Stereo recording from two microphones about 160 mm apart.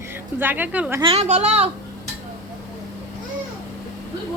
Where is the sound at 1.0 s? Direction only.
40° right (ahead or behind).